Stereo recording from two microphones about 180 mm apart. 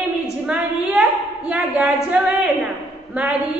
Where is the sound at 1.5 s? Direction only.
10° right (ahead or behind).